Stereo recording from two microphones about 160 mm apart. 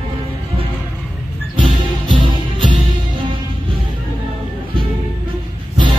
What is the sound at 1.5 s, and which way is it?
Music, 30° right (ahead or behind).